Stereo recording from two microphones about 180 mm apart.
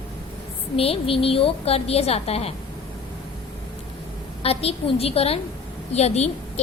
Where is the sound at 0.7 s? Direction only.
30° left (ahead or behind).